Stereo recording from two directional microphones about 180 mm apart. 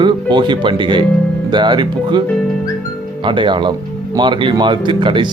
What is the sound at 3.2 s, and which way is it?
Speech, 25° right (ahead or behind).